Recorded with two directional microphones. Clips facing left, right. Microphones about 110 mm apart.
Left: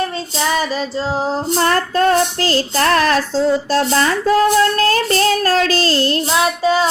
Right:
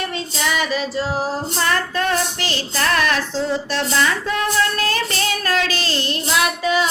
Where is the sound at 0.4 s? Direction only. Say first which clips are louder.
Left 3 dB; 30° left (ahead or behind).